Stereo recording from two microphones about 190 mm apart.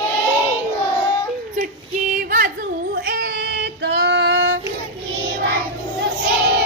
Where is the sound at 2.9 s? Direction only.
50° right (ahead or behind); by 4.6 s 70° right (ahead or behind).